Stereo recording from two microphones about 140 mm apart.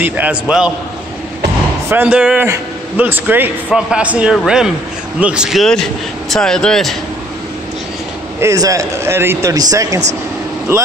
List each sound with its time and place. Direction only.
0.0 s a man's voice: 10° right (ahead or behind)
1.9 s a man's voice: 10° right (ahead or behind)
8.4 s speech: 20° right (ahead or behind)